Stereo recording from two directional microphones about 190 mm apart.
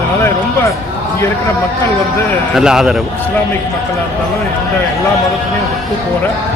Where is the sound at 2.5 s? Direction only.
5° right (ahead or behind).